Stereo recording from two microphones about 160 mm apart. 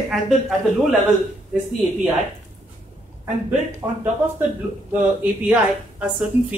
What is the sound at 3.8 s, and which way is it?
Speech, 15° right (ahead or behind).